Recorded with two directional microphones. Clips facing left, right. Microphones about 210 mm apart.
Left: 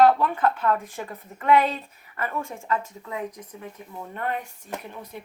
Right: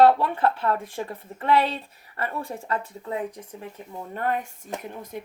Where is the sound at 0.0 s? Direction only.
30° right (ahead or behind).